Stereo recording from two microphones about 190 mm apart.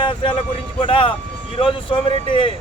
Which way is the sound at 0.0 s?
25° left (ahead or behind).